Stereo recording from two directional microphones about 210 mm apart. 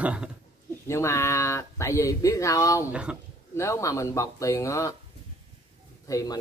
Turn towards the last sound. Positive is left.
turn(degrees=15)  # may be behind; listen again after turning